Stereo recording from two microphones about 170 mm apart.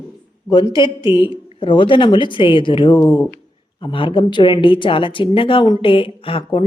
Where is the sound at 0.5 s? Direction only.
25° left (ahead or behind).